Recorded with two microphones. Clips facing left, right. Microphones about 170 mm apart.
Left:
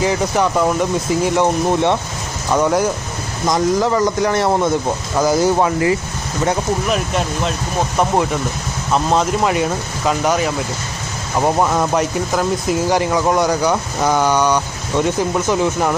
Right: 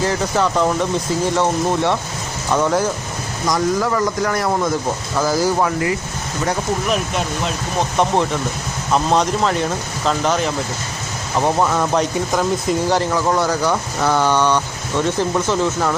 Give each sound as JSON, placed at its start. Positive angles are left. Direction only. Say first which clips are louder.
{"t": 0.0, "sound": "speech", "louder": "left 2 dB", "side_deg": 15}
{"t": 3.4, "sound": "speech", "louder": "left 3 dB", "side_deg": 20}
{"t": 7.9, "sound": "speech", "louder": "left 1 dB", "side_deg": 10}
{"t": 12.1, "sound": "speech", "louder": "even", "side_deg": 0}